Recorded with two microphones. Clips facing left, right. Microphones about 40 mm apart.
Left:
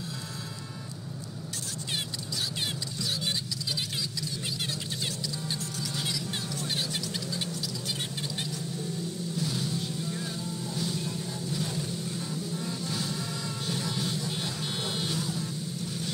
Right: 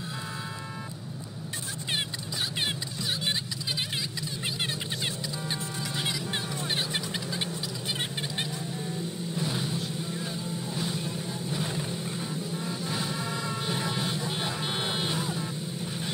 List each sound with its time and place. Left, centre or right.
5.0 s music: right
9.3 s vehicle: right
9.8 s vehicle: centre